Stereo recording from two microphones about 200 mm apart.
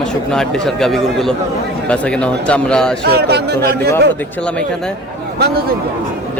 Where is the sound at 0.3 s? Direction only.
5° left (ahead or behind).